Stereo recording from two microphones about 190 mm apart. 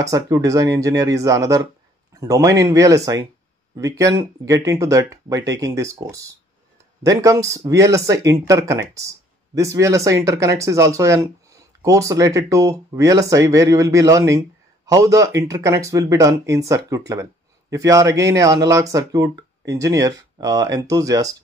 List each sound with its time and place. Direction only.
0.0 s speech: 20° right (ahead or behind)